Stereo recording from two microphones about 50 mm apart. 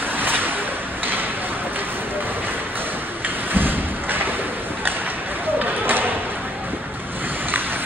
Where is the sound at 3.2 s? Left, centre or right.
Right.